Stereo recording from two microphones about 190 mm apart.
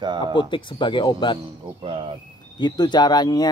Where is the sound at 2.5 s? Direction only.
20° left (ahead or behind).